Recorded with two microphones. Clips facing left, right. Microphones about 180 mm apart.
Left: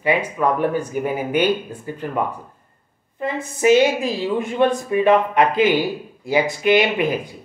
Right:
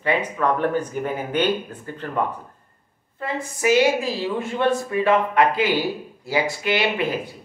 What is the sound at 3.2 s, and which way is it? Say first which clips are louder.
A woman's voice: left 4 dB; 20° left (ahead or behind).